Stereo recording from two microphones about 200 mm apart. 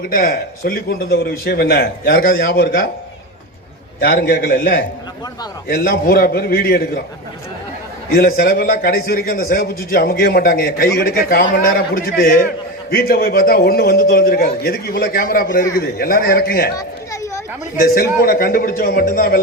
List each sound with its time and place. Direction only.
0.0 s a man's voice: 50° left (ahead or behind)
4.0 s a man's voice: 50° left (ahead or behind)
8.1 s a man's voice: 50° left (ahead or behind)
16.7 s children playing: 15° left (ahead or behind)
17.8 s a man's voice: 50° left (ahead or behind)